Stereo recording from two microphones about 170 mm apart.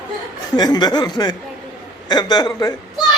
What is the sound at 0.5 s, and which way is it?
A man's voice, 25° left (ahead or behind).